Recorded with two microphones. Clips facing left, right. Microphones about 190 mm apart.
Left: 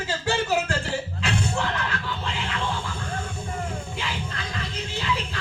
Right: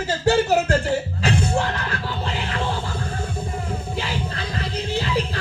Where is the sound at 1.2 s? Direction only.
35° right (ahead or behind).